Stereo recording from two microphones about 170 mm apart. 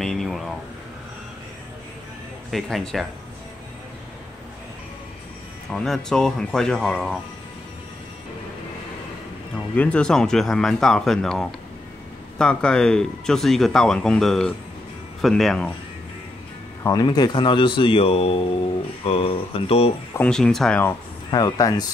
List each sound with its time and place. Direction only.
0.0 s air conditioning: centre (ahead or behind)
2.5 s speech: centre (ahead or behind)
5.7 s speech: 5° left (ahead or behind)
9.8 s speech: 5° left (ahead or behind)
16.8 s speech: 25° left (ahead or behind)
20.2 s speech: 5° left (ahead or behind)
21.3 s speech: 20° left (ahead or behind)